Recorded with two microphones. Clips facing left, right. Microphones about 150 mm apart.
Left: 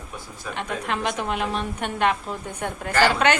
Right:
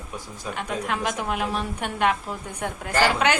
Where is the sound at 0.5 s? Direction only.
5° right (ahead or behind).